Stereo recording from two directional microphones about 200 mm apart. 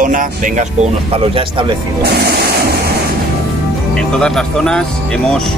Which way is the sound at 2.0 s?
55° right (ahead or behind).